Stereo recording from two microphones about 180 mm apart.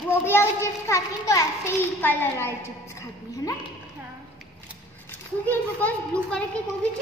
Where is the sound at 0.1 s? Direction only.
15° left (ahead or behind).